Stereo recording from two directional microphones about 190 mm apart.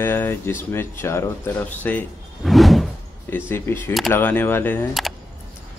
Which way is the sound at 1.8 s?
5° left (ahead or behind).